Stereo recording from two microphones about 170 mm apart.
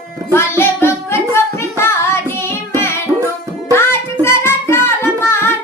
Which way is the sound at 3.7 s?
15° left (ahead or behind).